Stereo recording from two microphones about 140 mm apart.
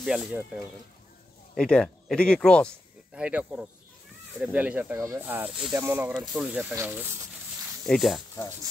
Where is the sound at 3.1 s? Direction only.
10° right (ahead or behind).